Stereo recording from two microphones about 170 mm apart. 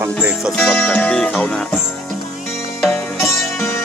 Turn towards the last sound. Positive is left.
turn(degrees=15)  # may be behind; listen again after turning